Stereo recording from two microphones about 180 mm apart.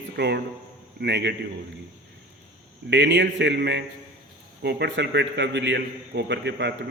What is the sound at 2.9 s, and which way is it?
A man's voice, 75° right (ahead or behind).